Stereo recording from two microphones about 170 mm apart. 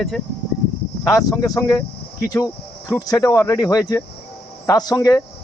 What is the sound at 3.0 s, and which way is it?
Speech, 20° left (ahead or behind).